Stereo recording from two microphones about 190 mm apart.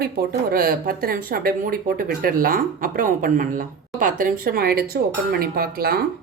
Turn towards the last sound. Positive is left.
turn(degrees=-50)  # may be behind; listen again after turning